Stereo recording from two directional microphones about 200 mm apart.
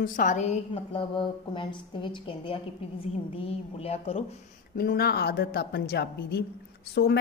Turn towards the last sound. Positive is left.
turn(degrees=55)  # may be behind; listen again after turning